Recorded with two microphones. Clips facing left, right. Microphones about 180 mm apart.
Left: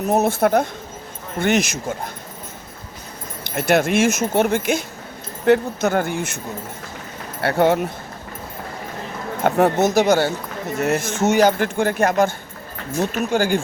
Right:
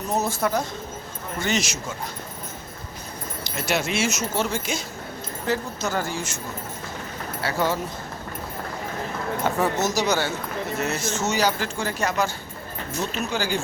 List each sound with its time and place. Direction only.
0.1 s speech: 60° left (ahead or behind)
3.4 s speech: 55° left (ahead or behind)
7.4 s speech: 60° left (ahead or behind)
9.4 s speech: 60° left (ahead or behind)